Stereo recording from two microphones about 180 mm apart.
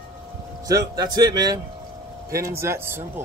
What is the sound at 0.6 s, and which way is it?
Speech, 20° right (ahead or behind).